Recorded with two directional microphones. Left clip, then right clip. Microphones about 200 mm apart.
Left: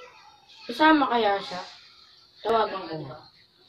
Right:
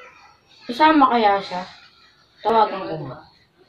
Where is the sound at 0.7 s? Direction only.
5° left (ahead or behind).